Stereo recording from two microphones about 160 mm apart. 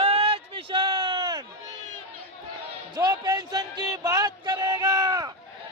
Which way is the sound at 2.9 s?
25° right (ahead or behind).